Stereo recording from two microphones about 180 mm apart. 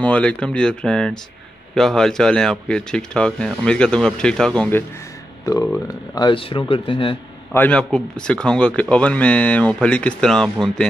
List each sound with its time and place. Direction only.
0.0 s speech: 5° left (ahead or behind); by 7.2 s 30° left (ahead or behind)
7.5 s speech: 10° left (ahead or behind)